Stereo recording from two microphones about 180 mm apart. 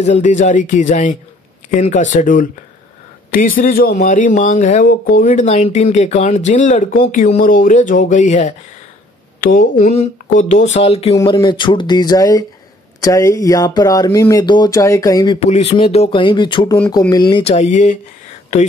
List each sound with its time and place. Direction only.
0.0 s speech: 40° left (ahead or behind)
11.1 s speech: 20° left (ahead or behind)
15.4 s speech: 35° left (ahead or behind)